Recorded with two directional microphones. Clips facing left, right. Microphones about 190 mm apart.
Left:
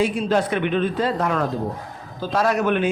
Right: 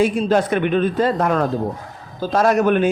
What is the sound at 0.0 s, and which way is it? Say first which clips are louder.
Speech: right 3 dB; 45° right (ahead or behind).